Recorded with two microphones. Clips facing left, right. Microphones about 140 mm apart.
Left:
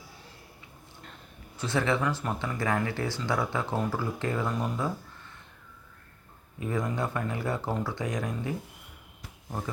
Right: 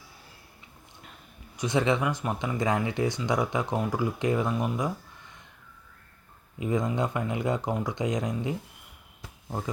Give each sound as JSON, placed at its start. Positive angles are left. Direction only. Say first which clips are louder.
{"t": 1.5, "sound": "speech", "louder": "right 2 dB", "side_deg": -20}
{"t": 6.6, "sound": "speech", "louder": "right 3 dB", "side_deg": -20}